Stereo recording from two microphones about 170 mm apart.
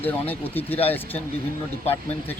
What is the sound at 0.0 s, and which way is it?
Speech, 10° left (ahead or behind).